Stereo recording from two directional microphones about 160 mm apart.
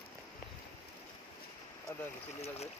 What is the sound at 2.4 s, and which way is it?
Speech, 40° left (ahead or behind).